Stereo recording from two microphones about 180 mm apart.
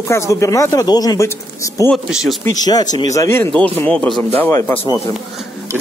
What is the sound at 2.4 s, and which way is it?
Speech, 20° left (ahead or behind).